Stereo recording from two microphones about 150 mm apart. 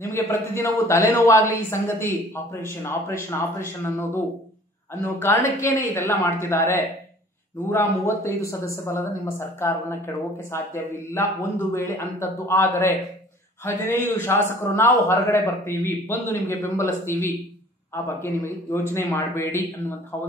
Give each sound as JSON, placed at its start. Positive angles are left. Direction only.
{"t": 0.0, "sound": "a woman's voice", "side_deg": 20}
{"t": 18.2, "sound": "a woman's voice", "side_deg": 15}